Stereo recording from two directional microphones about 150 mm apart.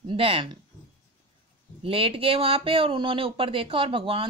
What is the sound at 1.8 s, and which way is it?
Speech, 40° right (ahead or behind).